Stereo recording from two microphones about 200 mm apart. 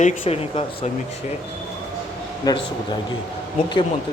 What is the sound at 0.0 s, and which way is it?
Speech, 30° left (ahead or behind).